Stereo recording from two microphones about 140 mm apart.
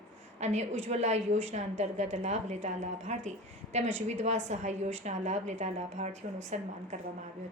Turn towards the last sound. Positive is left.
turn(degrees=-55)  # may be behind; listen again after turning